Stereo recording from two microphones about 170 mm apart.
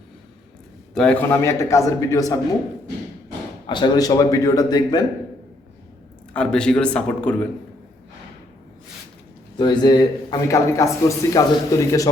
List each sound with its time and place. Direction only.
0.9 s a man's voice: 5° left (ahead or behind)
3.7 s a man's voice: 25° left (ahead or behind)
6.3 s speech: 5° left (ahead or behind)
9.6 s a man's voice: 25° left (ahead or behind)